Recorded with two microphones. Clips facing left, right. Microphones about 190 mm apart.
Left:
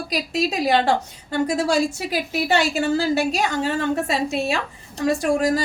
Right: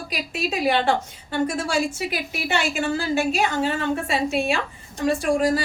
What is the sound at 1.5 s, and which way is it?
A woman's voice, 40° left (ahead or behind).